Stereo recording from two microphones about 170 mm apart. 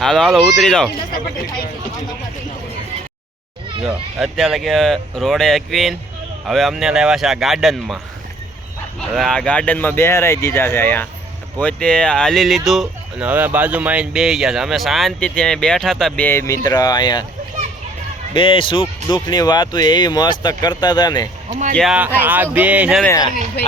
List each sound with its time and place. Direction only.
0.0 s speech: 5° left (ahead or behind)
3.8 s speech: centre (ahead or behind)
9.0 s speech: 5° left (ahead or behind); by 17.2 s 25° left (ahead or behind)
18.3 s speech: 30° left (ahead or behind)
21.8 s speech: 5° right (ahead or behind)
23.0 s speech: 20° left (ahead or behind)